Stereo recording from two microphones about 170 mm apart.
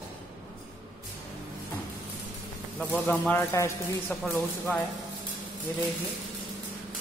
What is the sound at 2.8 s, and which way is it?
Speech, 10° left (ahead or behind).